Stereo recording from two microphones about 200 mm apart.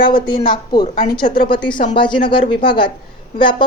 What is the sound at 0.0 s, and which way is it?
Speech, 25° left (ahead or behind).